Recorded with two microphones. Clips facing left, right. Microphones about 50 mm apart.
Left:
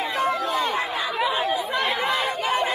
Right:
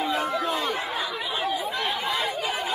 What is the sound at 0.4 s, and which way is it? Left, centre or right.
Chatter, centre.